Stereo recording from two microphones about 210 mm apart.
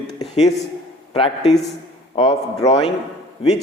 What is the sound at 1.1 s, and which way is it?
A man's voice, 25° left (ahead or behind).